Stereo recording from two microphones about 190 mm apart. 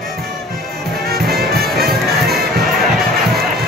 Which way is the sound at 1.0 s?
55° right (ahead or behind).